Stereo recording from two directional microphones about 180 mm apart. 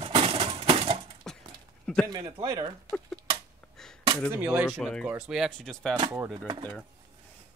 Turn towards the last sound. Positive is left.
turn(degrees=-25)  # may be behind; listen again after turning